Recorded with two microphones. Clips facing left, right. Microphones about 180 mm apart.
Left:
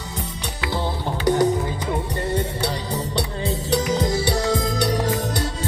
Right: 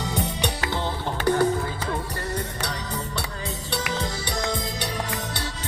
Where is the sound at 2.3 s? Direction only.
30° left (ahead or behind).